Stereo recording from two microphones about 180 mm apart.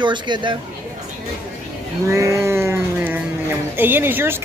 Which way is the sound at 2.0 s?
15° right (ahead or behind).